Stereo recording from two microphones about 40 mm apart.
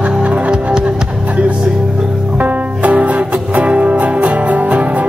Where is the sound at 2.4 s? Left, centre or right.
Right.